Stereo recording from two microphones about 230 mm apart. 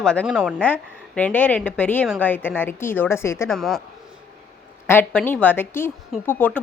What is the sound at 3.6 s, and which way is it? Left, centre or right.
Speech, centre.